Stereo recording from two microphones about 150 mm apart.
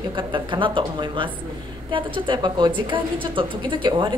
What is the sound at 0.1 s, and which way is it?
A woman's voice, 35° right (ahead or behind).